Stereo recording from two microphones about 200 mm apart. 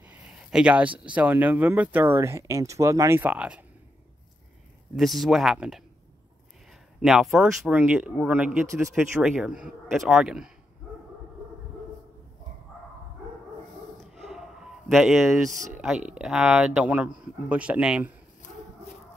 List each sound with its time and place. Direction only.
0.0 s speech: 5° right (ahead or behind)
4.9 s speech: centre (ahead or behind)
7.0 s speech: 5° right (ahead or behind)
13.9 s a sound: centre (ahead or behind)
15.8 s speech: 5° right (ahead or behind)
18.4 s dog: 40° left (ahead or behind)